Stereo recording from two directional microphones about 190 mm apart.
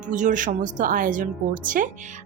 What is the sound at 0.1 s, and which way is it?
Speech, 40° right (ahead or behind).